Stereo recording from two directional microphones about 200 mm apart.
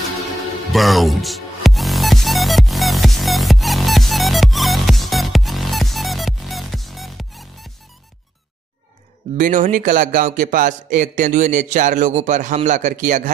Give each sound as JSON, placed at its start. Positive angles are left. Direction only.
{"t": 0.7, "sound": "music", "side_deg": 0}
{"t": 9.4, "sound": "a man's voice", "side_deg": -40}